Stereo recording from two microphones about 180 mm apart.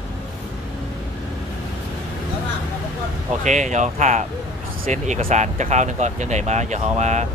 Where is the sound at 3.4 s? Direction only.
40° right (ahead or behind).